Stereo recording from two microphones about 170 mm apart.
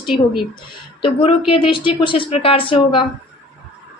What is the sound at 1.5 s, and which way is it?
A woman's voice, 30° left (ahead or behind).